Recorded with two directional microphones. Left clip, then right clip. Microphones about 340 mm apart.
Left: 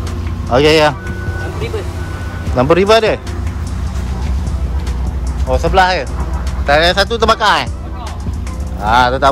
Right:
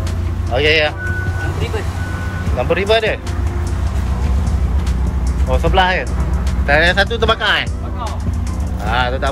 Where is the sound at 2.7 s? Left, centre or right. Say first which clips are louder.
Left 5 dB; left.